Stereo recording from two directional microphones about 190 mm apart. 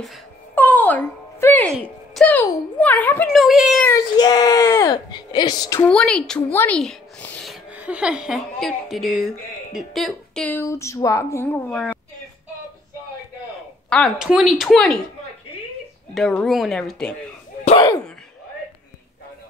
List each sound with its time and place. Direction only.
0.6 s speech: 10° left (ahead or behind)
3.3 s a woman's voice: centre (ahead or behind)
3.8 s speech: 20° left (ahead or behind)
5.9 s a woman's voice: 5° left (ahead or behind)
7.7 s a woman's voice: 10° right (ahead or behind); by 12.0 s 10° left (ahead or behind)
13.8 s a woman's voice: 5° left (ahead or behind)
16.2 s a woman's voice: centre (ahead or behind)
17.6 s sneeze: 25° left (ahead or behind)